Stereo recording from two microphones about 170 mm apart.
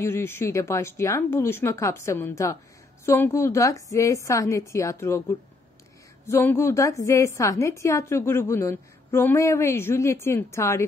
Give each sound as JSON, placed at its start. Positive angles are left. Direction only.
{"t": 0.0, "sound": "a woman's voice", "side_deg": 15}
{"t": 6.2, "sound": "a woman's voice", "side_deg": 15}